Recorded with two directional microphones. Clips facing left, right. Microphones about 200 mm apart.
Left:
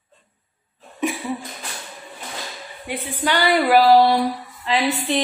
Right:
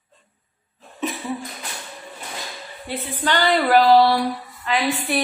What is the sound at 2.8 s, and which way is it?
A woman's voice, 15° left (ahead or behind).